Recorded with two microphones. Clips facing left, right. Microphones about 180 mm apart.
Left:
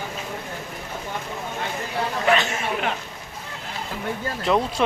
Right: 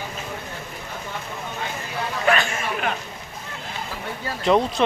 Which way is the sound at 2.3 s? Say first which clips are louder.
Left 1 dB; 20° left (ahead or behind).